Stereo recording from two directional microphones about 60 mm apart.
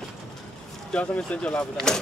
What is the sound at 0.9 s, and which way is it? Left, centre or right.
Speech, centre.